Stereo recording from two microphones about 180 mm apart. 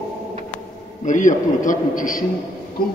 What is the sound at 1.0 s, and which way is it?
A man's voice, 45° left (ahead or behind).